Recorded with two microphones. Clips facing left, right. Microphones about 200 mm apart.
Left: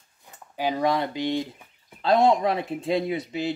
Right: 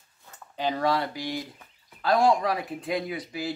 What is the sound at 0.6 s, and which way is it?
Speech, 10° left (ahead or behind).